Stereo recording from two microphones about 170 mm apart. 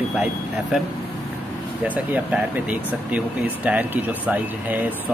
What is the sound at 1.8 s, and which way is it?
Speech, 10° right (ahead or behind).